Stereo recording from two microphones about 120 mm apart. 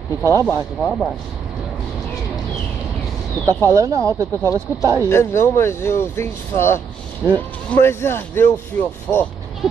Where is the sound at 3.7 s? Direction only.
25° right (ahead or behind).